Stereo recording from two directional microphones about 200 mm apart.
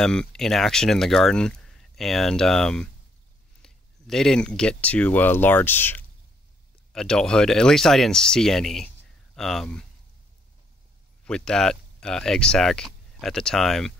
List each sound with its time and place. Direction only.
0.0 s speech: 5° left (ahead or behind)
11.2 s speech: 5° left (ahead or behind)